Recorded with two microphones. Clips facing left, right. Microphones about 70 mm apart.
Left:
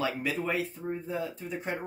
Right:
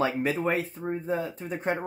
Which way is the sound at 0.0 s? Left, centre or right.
Right.